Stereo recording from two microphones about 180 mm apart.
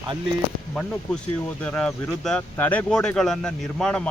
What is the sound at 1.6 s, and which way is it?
Speech, 5° left (ahead or behind).